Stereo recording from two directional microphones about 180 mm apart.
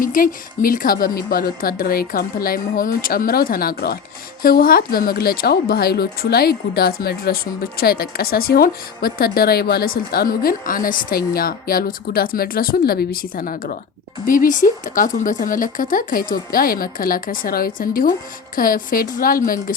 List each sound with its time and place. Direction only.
0.0 s speech: 50° left (ahead or behind)